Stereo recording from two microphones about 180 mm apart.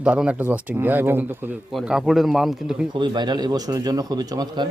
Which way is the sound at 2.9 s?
25° right (ahead or behind).